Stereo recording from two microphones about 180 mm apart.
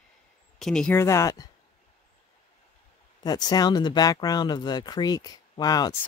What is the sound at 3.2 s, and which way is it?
Speech, 20° left (ahead or behind).